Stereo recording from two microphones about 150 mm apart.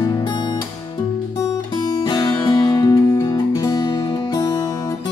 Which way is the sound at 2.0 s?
30° left (ahead or behind).